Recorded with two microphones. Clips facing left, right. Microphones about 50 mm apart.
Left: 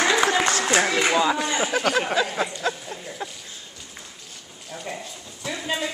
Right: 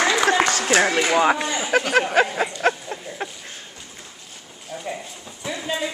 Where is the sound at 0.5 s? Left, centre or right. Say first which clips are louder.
Right 1 dB; left.